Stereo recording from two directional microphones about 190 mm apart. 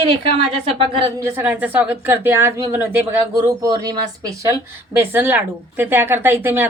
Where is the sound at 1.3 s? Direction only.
10° right (ahead or behind).